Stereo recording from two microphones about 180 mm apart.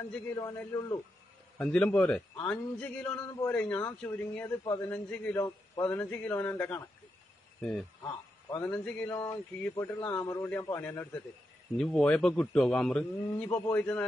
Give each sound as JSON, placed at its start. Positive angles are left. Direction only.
{"t": 0.3, "sound": "speech", "side_deg": 15}
{"t": 1.6, "sound": "a man's voice", "side_deg": 5}
{"t": 8.0, "sound": "a man's voice", "side_deg": 20}